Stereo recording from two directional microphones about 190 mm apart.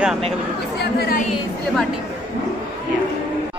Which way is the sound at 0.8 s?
55° left (ahead or behind).